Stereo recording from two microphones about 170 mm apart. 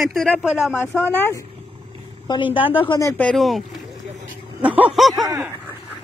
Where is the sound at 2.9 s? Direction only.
20° left (ahead or behind).